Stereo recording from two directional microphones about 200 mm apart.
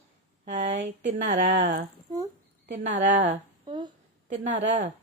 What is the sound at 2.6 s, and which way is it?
Speech, 65° right (ahead or behind).